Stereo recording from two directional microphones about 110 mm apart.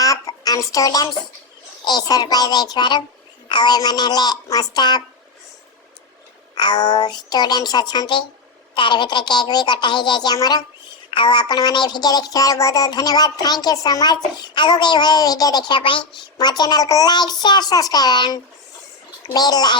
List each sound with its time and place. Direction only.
0.0 s music: 30° left (ahead or behind)
1.8 s a woman's voice: 40° left (ahead or behind)
6.5 s a woman's voice: 40° left (ahead or behind)